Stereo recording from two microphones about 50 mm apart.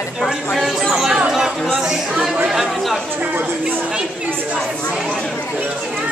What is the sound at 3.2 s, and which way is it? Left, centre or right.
A woman's voice, right.